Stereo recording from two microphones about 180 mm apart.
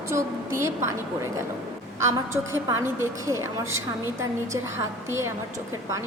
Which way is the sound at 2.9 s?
15° right (ahead or behind).